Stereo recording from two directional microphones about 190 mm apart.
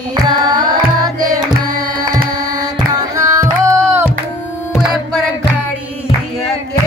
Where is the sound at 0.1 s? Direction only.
20° right (ahead or behind).